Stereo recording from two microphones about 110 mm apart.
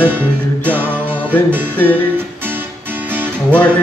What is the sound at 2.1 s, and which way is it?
Music, 20° right (ahead or behind).